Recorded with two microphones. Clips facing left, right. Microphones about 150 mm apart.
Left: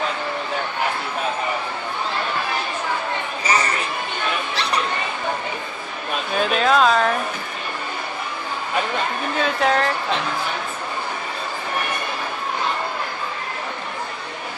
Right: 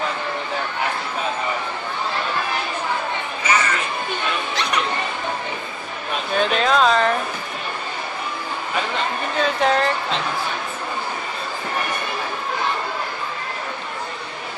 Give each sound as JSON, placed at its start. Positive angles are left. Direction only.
{"t": 3.4, "sound": "a sound", "side_deg": 35}
{"t": 6.3, "sound": "speech", "side_deg": 5}
{"t": 9.4, "sound": "speech", "side_deg": 0}